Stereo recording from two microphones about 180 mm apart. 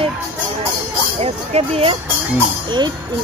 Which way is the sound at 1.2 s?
35° right (ahead or behind).